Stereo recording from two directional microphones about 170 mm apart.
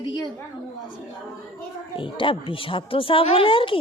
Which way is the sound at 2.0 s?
30° left (ahead or behind).